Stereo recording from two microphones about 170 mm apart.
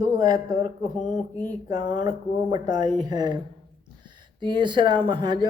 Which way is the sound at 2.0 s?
20° right (ahead or behind).